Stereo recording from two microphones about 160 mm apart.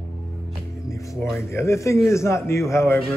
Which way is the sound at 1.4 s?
15° left (ahead or behind).